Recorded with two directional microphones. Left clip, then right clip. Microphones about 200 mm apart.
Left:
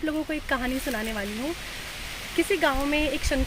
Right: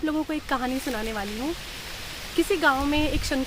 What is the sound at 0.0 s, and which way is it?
Speech, 15° right (ahead or behind).